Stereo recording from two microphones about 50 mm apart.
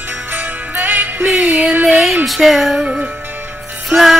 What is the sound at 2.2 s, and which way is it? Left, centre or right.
Music, centre.